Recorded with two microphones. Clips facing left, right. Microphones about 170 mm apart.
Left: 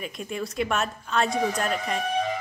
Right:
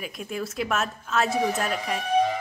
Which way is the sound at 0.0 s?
Centre (ahead or behind).